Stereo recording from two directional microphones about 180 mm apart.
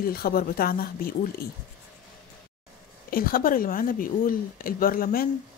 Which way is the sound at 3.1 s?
55° left (ahead or behind).